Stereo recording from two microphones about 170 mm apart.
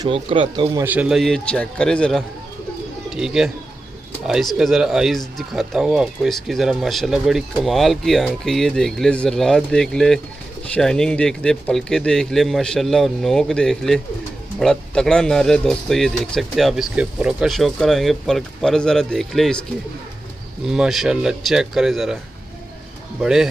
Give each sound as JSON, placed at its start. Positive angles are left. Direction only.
{"t": 0.0, "sound": "speech", "side_deg": -30}
{"t": 0.7, "sound": "speech", "side_deg": -10}
{"t": 4.6, "sound": "speech", "side_deg": 0}
{"t": 20.6, "sound": "speech", "side_deg": -5}
{"t": 23.2, "sound": "speech", "side_deg": -5}